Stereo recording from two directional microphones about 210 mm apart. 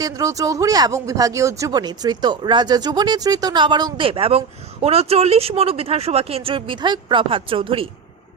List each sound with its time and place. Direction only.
0.0 s speech: 15° right (ahead or behind)